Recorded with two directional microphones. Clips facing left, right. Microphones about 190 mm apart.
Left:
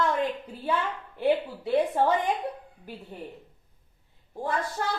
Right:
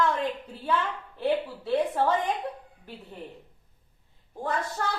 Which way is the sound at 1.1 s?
15° left (ahead or behind).